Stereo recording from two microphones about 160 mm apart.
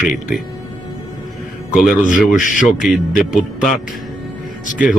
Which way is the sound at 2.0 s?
55° left (ahead or behind).